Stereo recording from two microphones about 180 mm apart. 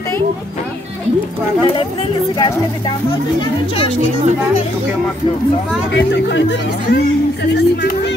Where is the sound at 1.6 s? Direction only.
25° left (ahead or behind).